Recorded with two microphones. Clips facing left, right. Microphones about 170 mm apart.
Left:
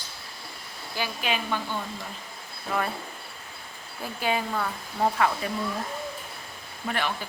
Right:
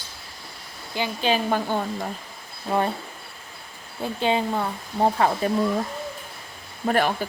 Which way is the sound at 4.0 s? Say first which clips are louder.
Right 5 dB; 25° right (ahead or behind).